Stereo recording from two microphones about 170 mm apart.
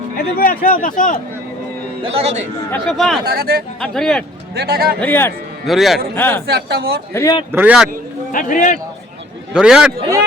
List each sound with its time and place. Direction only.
0.2 s a man's voice: 60° left (ahead or behind)
2.0 s a man's voice: 35° right (ahead or behind)
2.8 s a man's voice: centre (ahead or behind)
3.2 s speech: 65° right (ahead or behind)
3.8 s a man's voice: 5° left (ahead or behind)
4.5 s speech: 70° right (ahead or behind)
4.9 s a man's voice: 10° left (ahead or behind)
5.6 s a man's voice: centre (ahead or behind)
6.1 s a man's voice: 10° left (ahead or behind)
6.5 s speech: 70° right (ahead or behind)
7.1 s a man's voice: 15° left (ahead or behind)
7.5 s speech: 10° right (ahead or behind)
8.3 s a man's voice: 50° left (ahead or behind)
9.5 s a man's voice: 5° right (ahead or behind)